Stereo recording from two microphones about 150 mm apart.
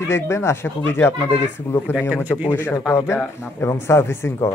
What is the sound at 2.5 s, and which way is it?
Speech, 15° left (ahead or behind).